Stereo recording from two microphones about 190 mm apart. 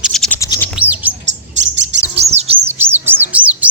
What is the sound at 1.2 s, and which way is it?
Bird, 70° right (ahead or behind).